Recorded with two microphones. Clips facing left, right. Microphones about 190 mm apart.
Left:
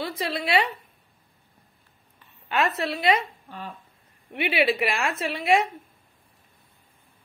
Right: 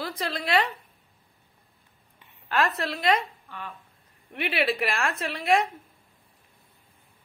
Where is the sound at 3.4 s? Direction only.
40° left (ahead or behind).